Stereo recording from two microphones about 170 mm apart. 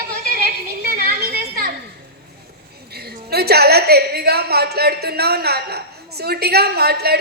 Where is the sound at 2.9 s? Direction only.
65° right (ahead or behind).